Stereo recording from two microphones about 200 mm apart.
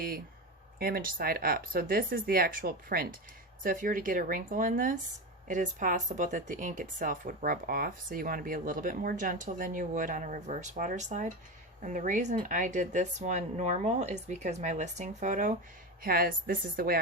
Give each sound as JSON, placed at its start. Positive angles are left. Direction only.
{"t": 0.8, "sound": "speech", "side_deg": -45}